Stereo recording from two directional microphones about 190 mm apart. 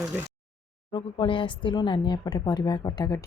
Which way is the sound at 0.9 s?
25° left (ahead or behind).